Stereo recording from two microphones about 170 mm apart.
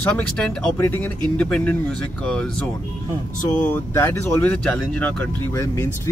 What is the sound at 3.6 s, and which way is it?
Speech, 10° left (ahead or behind).